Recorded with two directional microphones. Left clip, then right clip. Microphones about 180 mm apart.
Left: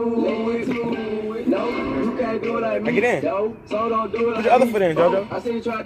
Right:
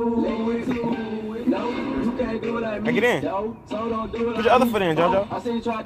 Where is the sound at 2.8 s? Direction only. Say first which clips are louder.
Right 1 dB; 30° right (ahead or behind).